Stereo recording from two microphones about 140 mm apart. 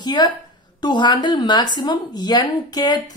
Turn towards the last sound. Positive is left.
turn(degrees=30)  # may be behind; listen again after turning